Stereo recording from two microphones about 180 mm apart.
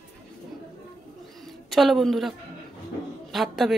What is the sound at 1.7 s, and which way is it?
A man's voice, centre (ahead or behind).